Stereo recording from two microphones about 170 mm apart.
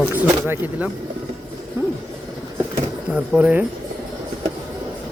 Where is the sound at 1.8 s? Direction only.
15° right (ahead or behind).